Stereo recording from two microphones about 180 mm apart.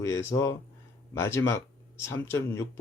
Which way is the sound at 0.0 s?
15° left (ahead or behind).